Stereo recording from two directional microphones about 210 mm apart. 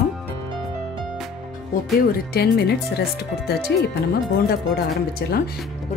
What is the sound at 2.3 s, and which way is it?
Speech, 50° left (ahead or behind).